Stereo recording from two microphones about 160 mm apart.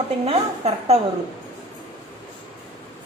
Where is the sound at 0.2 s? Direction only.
40° right (ahead or behind).